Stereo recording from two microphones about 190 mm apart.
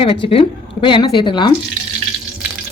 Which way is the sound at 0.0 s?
30° left (ahead or behind).